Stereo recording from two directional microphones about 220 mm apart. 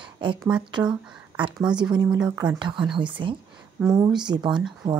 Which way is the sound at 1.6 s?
20° right (ahead or behind).